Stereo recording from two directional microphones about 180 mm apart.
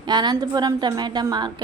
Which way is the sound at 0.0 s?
25° right (ahead or behind).